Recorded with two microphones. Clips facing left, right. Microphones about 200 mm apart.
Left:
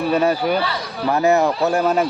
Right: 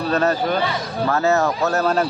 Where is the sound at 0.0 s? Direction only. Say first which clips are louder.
Left 2 dB; 10° left (ahead or behind).